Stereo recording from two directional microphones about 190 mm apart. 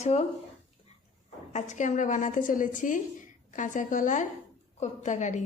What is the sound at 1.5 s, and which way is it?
A woman's voice, 40° left (ahead or behind).